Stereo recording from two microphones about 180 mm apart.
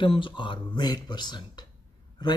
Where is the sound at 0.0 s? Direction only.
25° left (ahead or behind).